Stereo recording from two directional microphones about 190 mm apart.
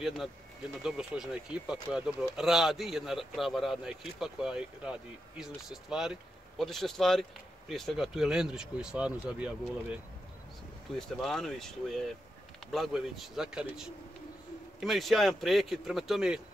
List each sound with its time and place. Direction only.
0.8 s speech: 5° right (ahead or behind)
11.0 s speech: 5° left (ahead or behind)